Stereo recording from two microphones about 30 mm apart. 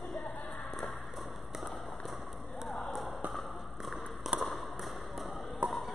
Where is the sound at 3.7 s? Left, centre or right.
Centre.